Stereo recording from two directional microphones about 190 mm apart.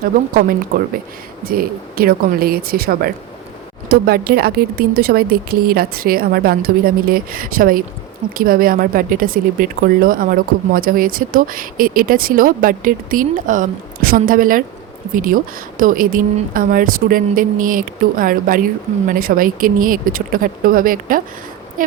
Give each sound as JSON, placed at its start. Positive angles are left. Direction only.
{"t": 0.0, "sound": "speech", "side_deg": -50}